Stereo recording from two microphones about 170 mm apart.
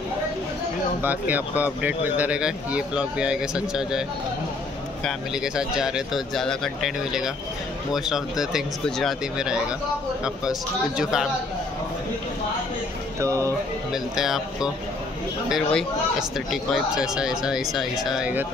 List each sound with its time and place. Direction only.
1.0 s speech: 10° right (ahead or behind)
5.0 s speech: 5° right (ahead or behind)
11.0 s speech: 5° right (ahead or behind)
13.2 s speech: 20° right (ahead or behind)
14.1 s speech: centre (ahead or behind)